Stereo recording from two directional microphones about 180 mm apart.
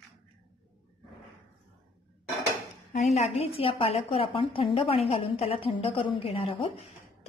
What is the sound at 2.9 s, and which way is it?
A woman's voice, 40° left (ahead or behind).